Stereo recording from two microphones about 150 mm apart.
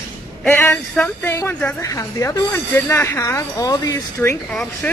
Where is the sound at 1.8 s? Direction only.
20° left (ahead or behind).